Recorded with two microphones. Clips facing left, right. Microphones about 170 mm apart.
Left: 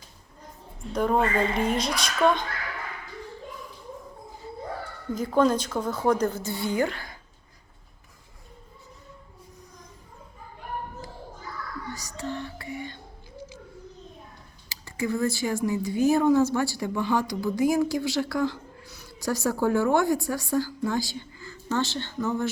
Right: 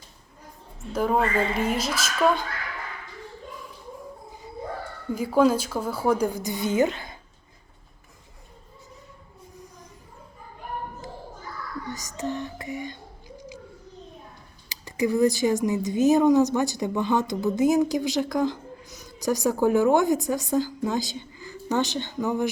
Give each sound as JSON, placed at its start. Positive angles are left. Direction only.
{"t": 0.8, "sound": "a woman's voice", "side_deg": -5}
{"t": 5.1, "sound": "a woman's voice", "side_deg": -10}
{"t": 11.9, "sound": "music", "side_deg": -20}
{"t": 14.7, "sound": "a woman's voice", "side_deg": -15}